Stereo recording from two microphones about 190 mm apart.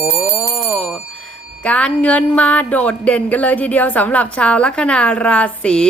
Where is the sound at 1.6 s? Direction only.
5° left (ahead or behind).